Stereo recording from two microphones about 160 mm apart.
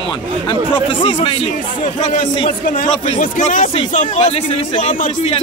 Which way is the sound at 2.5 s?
60° left (ahead or behind).